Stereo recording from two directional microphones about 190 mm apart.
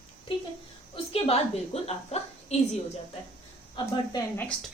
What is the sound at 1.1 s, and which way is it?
A woman's voice, 30° left (ahead or behind).